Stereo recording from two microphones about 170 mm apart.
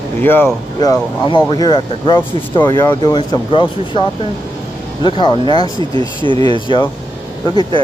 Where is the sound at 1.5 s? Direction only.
25° left (ahead or behind).